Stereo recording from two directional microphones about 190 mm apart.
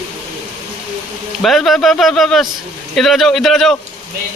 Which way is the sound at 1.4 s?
Centre (ahead or behind).